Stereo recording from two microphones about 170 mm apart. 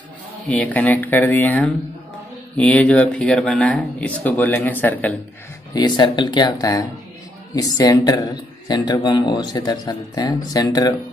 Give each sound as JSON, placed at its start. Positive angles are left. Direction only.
{"t": 0.5, "sound": "speech", "side_deg": 10}
{"t": 5.7, "sound": "speech", "side_deg": 25}